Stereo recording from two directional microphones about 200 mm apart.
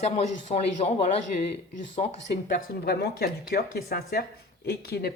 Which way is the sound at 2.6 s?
50° left (ahead or behind).